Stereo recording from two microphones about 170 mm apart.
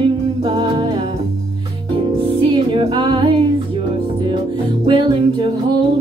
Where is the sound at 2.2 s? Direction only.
30° right (ahead or behind).